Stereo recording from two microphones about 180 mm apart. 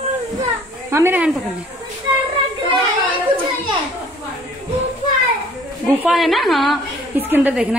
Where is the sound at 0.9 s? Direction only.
10° right (ahead or behind).